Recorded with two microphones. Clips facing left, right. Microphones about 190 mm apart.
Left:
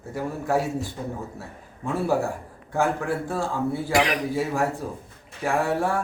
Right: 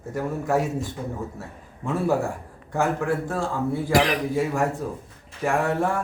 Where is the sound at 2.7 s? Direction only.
10° left (ahead or behind).